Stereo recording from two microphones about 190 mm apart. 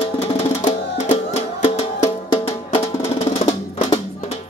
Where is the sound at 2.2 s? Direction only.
25° left (ahead or behind).